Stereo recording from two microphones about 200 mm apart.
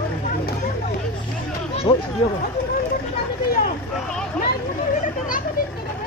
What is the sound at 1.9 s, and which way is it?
Speech, 30° left (ahead or behind).